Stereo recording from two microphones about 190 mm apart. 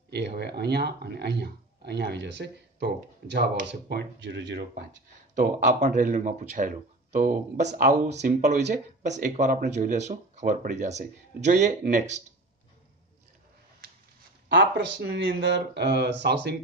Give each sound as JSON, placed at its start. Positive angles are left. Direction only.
{"t": 0.1, "sound": "speech", "side_deg": -60}
{"t": 5.7, "sound": "speech", "side_deg": -40}
{"t": 14.5, "sound": "speech", "side_deg": -65}